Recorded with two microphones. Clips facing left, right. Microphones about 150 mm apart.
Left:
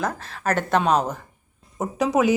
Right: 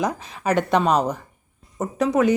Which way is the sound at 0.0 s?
10° right (ahead or behind).